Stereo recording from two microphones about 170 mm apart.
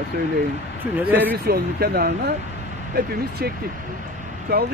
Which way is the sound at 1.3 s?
65° right (ahead or behind).